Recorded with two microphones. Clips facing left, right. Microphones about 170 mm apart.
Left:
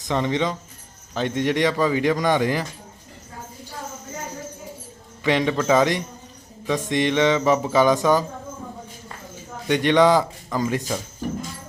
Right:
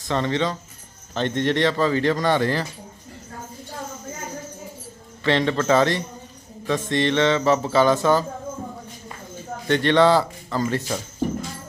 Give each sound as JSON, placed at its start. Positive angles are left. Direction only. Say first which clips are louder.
{"t": 0.0, "sound": "speech", "louder": "even", "side_deg": 15}
{"t": 5.2, "sound": "speech", "louder": "even", "side_deg": 10}
{"t": 9.6, "sound": "speech", "louder": "even", "side_deg": 15}